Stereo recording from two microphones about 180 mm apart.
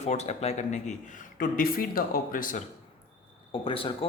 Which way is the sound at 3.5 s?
30° left (ahead or behind).